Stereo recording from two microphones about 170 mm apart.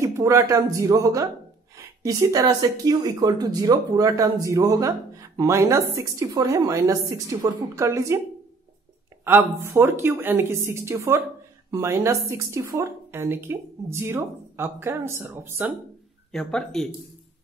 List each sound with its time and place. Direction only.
0.0 s speech: 15° right (ahead or behind)
9.2 s speech: 15° right (ahead or behind)
16.3 s speech: 5° left (ahead or behind)